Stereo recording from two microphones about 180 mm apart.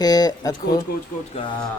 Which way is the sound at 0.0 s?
20° left (ahead or behind).